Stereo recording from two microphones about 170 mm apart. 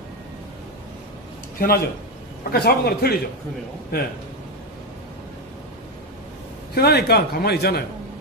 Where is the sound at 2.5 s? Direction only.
65° left (ahead or behind).